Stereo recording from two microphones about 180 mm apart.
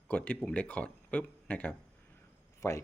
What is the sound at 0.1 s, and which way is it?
Speech, 10° left (ahead or behind).